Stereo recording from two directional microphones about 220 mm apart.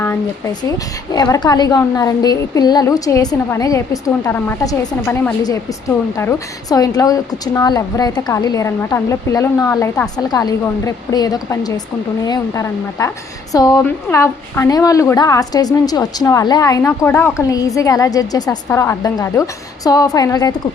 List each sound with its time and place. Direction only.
0.0 s a woman's voice: 10° left (ahead or behind)